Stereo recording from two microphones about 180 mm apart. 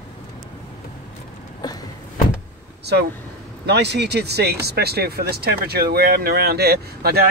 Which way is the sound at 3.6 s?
70° right (ahead or behind).